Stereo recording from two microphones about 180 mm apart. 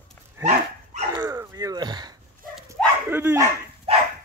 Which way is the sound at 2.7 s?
15° right (ahead or behind).